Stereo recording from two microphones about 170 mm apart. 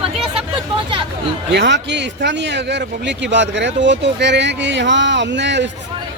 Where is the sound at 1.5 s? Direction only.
90° right.